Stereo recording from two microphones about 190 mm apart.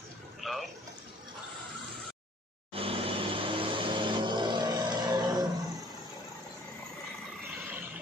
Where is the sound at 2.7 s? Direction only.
30° right (ahead or behind).